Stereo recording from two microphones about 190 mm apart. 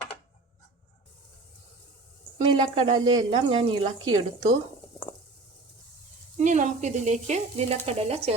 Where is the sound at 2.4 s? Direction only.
30° right (ahead or behind).